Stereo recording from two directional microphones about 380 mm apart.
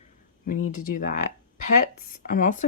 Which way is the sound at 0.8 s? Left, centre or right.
Left.